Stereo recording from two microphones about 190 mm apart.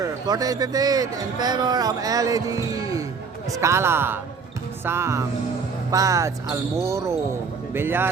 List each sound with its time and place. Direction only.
0.0 s a man's voice: 20° right (ahead or behind)